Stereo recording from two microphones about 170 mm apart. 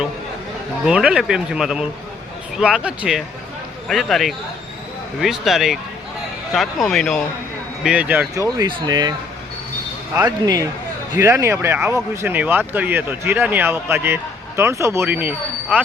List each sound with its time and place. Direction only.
0.9 s speech: 5° right (ahead or behind)
7.9 s speech: 10° right (ahead or behind)
8.5 s speech: 25° right (ahead or behind)
10.2 s speech: 20° right (ahead or behind)